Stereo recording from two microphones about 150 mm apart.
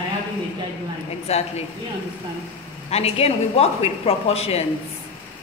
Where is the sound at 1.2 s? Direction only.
45° left (ahead or behind).